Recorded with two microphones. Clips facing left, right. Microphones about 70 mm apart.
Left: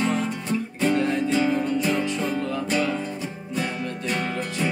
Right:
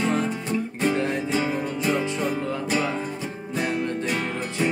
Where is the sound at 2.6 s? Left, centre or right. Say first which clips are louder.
Even; centre.